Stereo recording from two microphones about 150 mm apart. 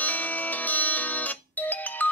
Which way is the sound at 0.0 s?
10° left (ahead or behind).